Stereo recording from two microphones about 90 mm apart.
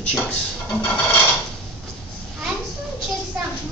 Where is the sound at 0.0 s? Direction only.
15° left (ahead or behind).